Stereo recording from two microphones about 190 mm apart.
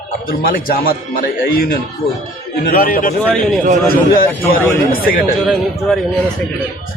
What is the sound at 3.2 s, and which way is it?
Speech, 5° left (ahead or behind).